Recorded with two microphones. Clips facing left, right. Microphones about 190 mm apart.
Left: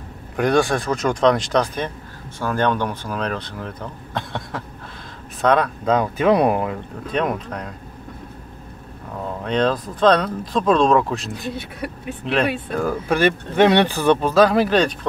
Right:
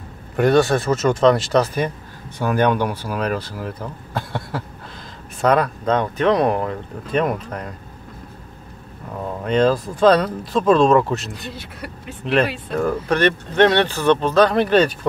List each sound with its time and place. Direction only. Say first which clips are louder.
0.4 s speech: right 3 dB; centre (ahead or behind)
9.4 s speech: right 3 dB; 5° right (ahead or behind)